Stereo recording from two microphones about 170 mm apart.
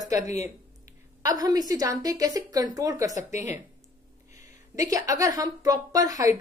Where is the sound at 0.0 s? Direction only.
20° right (ahead or behind).